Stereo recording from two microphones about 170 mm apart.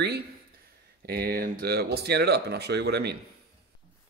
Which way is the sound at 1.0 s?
65° right (ahead or behind).